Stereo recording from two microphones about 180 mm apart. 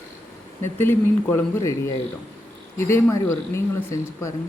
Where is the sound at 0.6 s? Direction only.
15° left (ahead or behind).